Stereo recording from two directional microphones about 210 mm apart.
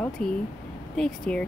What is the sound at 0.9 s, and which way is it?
Speech, 5° left (ahead or behind).